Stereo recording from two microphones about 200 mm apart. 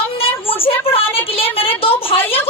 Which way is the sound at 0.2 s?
30° left (ahead or behind).